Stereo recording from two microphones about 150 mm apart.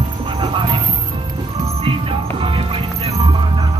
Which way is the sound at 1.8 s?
35° right (ahead or behind).